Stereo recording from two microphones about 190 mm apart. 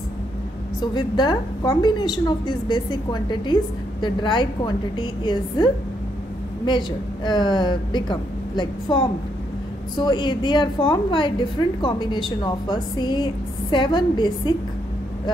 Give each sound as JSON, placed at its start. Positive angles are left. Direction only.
{"t": 0.7, "sound": "a woman's voice", "side_deg": 20}
{"t": 7.2, "sound": "a woman's voice", "side_deg": 25}